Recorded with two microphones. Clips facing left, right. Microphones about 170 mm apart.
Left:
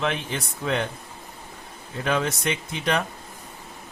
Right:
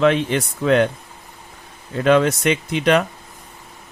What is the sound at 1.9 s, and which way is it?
Speech, 80° right.